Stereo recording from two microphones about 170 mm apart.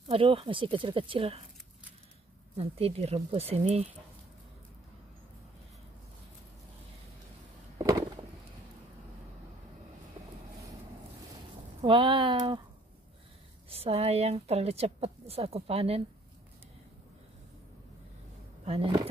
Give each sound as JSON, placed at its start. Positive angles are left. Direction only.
{"t": 0.1, "sound": "a woman's voice", "side_deg": -30}
{"t": 2.5, "sound": "a woman's voice", "side_deg": -35}
{"t": 11.8, "sound": "speech", "side_deg": -30}
{"t": 13.7, "sound": "a woman's voice", "side_deg": -35}
{"t": 18.7, "sound": "a woman's voice", "side_deg": -35}